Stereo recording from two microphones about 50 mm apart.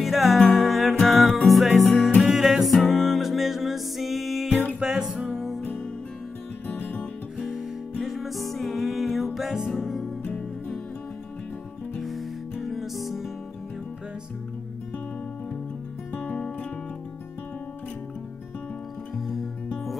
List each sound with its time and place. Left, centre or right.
0.0 s music: centre
2.2 s music: centre
6.7 s music: left
7.3 s music: centre
12.0 s music: centre
16.2 s music: left
19.1 s music: centre